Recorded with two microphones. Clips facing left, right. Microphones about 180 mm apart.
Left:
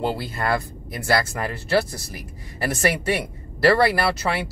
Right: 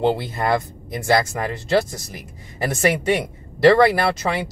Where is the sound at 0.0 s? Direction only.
20° right (ahead or behind).